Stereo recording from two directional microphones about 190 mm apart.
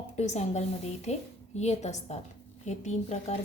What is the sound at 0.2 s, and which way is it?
A woman's voice, 35° left (ahead or behind).